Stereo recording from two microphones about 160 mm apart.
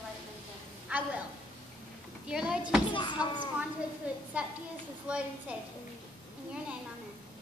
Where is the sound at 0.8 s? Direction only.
10° right (ahead or behind).